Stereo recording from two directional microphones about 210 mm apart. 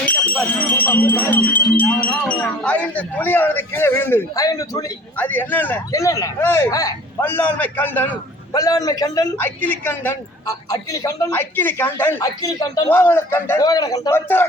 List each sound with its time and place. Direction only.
0.0 s speech: 5° left (ahead or behind)